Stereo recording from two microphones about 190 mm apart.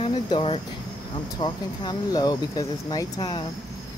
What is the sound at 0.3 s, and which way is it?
Speech, 30° left (ahead or behind).